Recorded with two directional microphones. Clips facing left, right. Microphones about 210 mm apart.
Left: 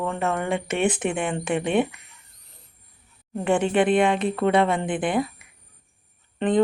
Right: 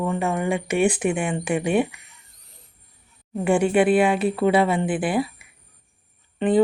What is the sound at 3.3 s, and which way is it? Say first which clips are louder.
Speech: right 2 dB; 10° right (ahead or behind).